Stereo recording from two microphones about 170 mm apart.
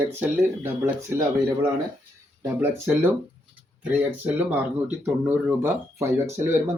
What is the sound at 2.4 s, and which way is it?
Speech, 15° right (ahead or behind).